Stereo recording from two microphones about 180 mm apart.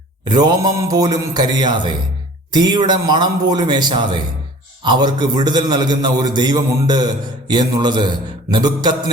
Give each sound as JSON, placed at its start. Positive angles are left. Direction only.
{"t": 0.3, "sound": "a man's voice", "side_deg": -20}